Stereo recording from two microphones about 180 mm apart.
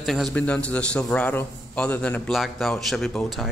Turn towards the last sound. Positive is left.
turn(degrees=0)  # may be behind; listen again after turning